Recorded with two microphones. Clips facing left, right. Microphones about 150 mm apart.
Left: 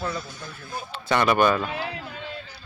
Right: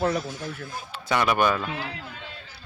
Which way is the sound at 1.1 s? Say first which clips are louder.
Left 2 dB; 5° right (ahead or behind).